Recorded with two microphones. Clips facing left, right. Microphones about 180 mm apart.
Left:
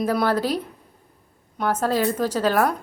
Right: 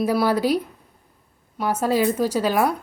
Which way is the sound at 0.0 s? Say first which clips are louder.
Right 2 dB; 10° right (ahead or behind).